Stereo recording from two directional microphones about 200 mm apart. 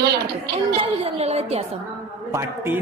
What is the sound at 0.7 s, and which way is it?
Speech, 30° right (ahead or behind).